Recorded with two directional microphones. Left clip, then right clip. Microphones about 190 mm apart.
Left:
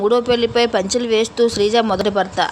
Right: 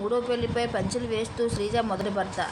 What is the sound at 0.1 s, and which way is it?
Speech, 55° left (ahead or behind).